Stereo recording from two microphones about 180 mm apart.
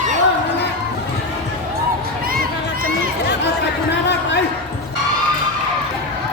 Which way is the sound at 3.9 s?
75° left (ahead or behind).